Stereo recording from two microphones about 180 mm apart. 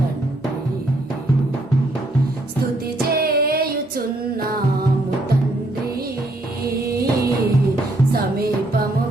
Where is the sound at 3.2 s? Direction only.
60° right (ahead or behind).